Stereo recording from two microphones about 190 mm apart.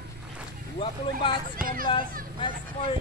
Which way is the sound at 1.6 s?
50° right (ahead or behind).